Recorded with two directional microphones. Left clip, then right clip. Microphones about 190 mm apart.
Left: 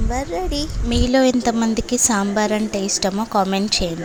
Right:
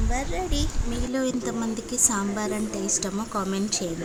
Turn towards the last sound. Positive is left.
turn(degrees=25)  # may be behind; listen again after turning